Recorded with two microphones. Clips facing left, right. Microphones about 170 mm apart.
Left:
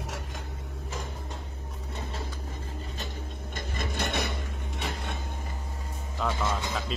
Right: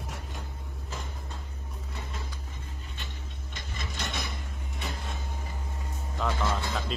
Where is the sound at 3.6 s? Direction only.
55° left (ahead or behind).